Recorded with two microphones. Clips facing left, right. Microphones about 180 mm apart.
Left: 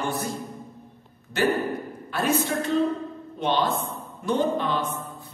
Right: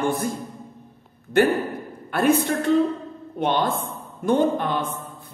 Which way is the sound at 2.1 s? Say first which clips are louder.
Right 5 dB; 55° right (ahead or behind).